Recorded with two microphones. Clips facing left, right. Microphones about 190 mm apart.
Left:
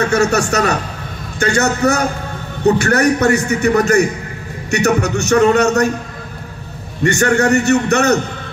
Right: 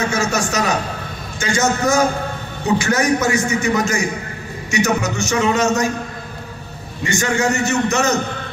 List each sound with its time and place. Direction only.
0.0 s a man's voice: 65° left (ahead or behind)
7.0 s a man's voice: 65° left (ahead or behind)